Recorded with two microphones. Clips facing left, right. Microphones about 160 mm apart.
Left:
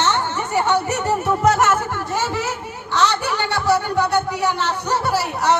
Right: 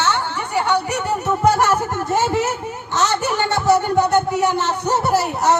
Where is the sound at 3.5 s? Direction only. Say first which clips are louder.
Right 3 dB; 20° right (ahead or behind).